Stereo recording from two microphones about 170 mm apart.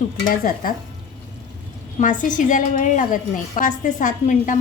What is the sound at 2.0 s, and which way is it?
A woman's voice, 50° left (ahead or behind).